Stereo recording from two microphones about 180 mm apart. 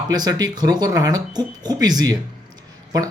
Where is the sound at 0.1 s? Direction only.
20° right (ahead or behind).